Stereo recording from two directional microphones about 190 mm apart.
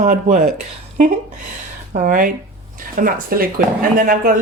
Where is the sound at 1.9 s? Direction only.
45° right (ahead or behind).